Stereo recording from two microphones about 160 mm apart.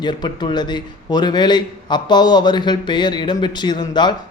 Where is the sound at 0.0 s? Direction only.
30° left (ahead or behind).